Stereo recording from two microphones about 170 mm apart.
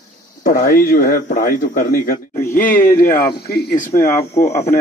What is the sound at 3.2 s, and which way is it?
Speech, 65° left (ahead or behind).